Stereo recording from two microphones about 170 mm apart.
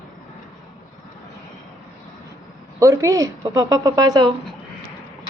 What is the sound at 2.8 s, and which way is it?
A woman's voice, 15° right (ahead or behind).